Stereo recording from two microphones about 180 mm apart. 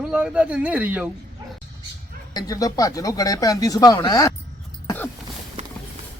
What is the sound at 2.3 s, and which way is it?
Speech, 20° left (ahead or behind).